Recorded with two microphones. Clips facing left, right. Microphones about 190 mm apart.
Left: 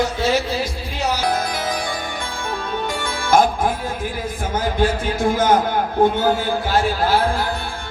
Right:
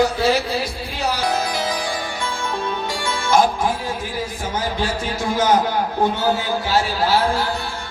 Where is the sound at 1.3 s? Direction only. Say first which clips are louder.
Even; 55° left (ahead or behind).